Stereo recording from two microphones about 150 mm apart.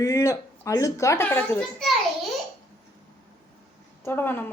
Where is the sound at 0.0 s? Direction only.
20° left (ahead or behind).